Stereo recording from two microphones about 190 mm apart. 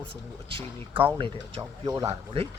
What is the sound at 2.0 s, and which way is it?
Speech, 30° right (ahead or behind).